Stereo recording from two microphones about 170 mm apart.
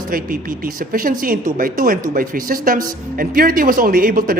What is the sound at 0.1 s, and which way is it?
Speech, 55° right (ahead or behind).